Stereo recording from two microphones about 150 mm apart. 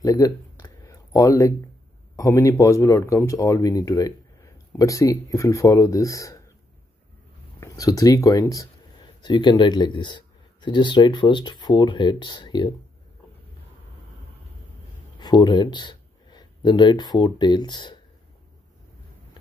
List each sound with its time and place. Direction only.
0.0 s a sound: 20° left (ahead or behind)
2.1 s speech: 20° left (ahead or behind)
7.6 s speech: 20° left (ahead or behind)
15.1 s speech: 30° left (ahead or behind)